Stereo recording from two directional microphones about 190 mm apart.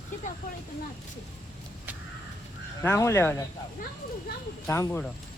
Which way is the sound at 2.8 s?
15° left (ahead or behind).